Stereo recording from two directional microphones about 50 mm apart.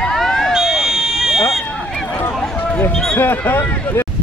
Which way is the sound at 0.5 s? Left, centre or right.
Centre.